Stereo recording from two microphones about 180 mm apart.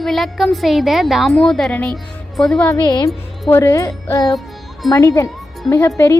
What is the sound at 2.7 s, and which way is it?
A woman's voice, 20° left (ahead or behind).